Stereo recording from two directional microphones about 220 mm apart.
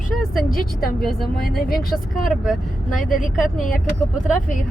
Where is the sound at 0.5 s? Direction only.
45° left (ahead or behind).